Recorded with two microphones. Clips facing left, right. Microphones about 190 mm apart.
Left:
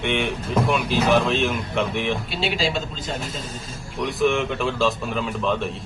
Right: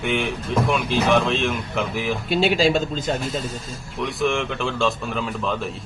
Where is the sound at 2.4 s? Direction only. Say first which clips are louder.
Right 7 dB; 45° right (ahead or behind).